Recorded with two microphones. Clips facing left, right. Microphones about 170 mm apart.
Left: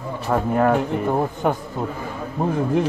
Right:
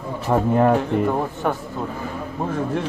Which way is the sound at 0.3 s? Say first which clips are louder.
Right 2 dB; 20° right (ahead or behind).